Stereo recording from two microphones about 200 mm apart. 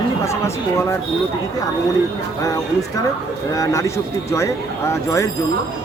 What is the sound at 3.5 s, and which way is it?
Speech, 15° left (ahead or behind).